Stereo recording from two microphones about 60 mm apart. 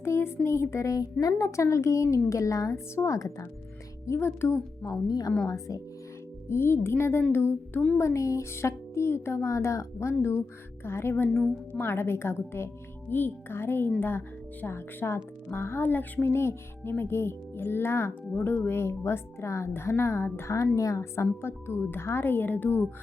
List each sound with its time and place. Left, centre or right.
0.0 s speech: left
0.4 s music: left
1.2 s a woman's voice: left
4.0 s music: left
4.9 s speech: left
5.5 s speech: left
6.5 s music: left
7.9 s music: left
14.0 s a woman's voice: left
15.5 s music: left
17.0 s a woman's voice: left
18.3 s music: left
20.7 s a woman's voice: left